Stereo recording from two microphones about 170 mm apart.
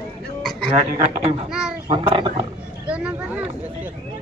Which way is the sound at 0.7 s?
45° right (ahead or behind).